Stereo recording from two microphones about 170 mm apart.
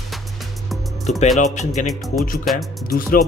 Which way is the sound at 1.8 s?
45° left (ahead or behind).